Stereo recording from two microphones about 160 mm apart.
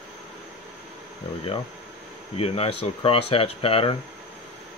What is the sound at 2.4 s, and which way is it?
Speech, 35° left (ahead or behind).